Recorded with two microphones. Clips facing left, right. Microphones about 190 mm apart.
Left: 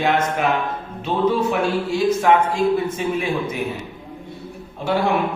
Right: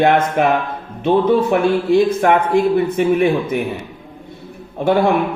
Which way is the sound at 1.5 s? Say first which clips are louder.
Right 7 dB; 55° right (ahead or behind).